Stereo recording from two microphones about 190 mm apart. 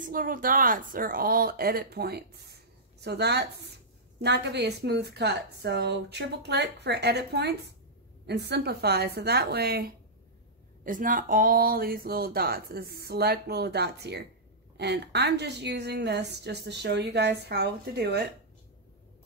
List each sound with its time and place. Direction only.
0.0 s a woman's voice: 45° right (ahead or behind)